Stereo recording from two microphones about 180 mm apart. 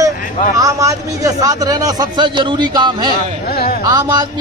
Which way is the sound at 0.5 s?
20° right (ahead or behind).